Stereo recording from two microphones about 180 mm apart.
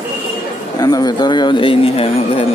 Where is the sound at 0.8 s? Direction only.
20° left (ahead or behind).